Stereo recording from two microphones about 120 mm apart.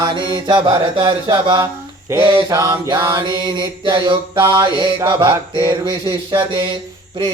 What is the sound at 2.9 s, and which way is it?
Mantra, 40° right (ahead or behind).